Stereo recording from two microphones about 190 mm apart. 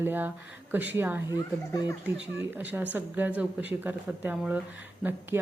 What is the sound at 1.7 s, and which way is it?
Speech, 20° left (ahead or behind).